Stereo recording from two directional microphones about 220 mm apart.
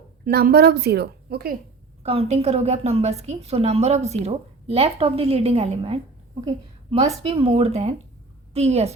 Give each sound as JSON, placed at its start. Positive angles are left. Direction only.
{"t": 0.3, "sound": "a woman's voice", "side_deg": -45}
{"t": 2.0, "sound": "a woman's voice", "side_deg": -30}
{"t": 7.2, "sound": "a woman's voice", "side_deg": -25}